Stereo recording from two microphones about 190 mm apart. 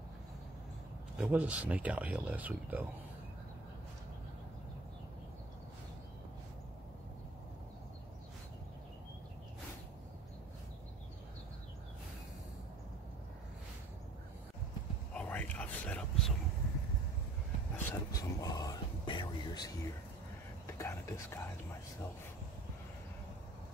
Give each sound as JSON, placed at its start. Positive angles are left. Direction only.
{"t": 1.1, "sound": "speech", "side_deg": -5}
{"t": 15.1, "sound": "whispering", "side_deg": 10}
{"t": 17.7, "sound": "a sound", "side_deg": 15}